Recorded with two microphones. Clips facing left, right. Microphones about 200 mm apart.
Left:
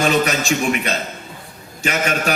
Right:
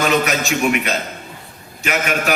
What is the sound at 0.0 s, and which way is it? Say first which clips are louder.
A man's voice: even; 30° left (ahead or behind).